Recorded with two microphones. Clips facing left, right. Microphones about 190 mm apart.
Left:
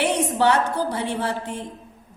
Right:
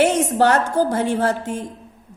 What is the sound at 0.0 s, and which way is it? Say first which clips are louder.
A woman's voice: right 4 dB; 45° right (ahead or behind).